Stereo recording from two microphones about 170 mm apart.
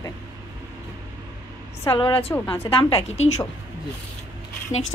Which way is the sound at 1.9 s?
30° left (ahead or behind).